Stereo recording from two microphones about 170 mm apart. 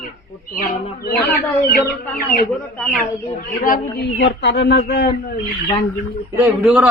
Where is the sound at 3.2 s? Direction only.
50° left (ahead or behind).